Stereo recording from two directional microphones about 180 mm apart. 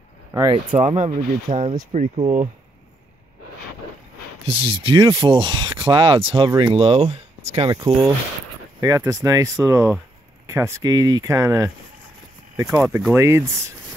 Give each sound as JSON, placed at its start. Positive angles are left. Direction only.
{"t": 0.3, "sound": "speech", "side_deg": -15}
{"t": 0.7, "sound": "speech", "side_deg": -40}
{"t": 4.5, "sound": "speech", "side_deg": -30}
{"t": 7.7, "sound": "speech", "side_deg": -20}
{"t": 12.6, "sound": "speech", "side_deg": -5}